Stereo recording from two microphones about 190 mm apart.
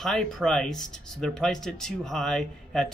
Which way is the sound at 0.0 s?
Centre (ahead or behind).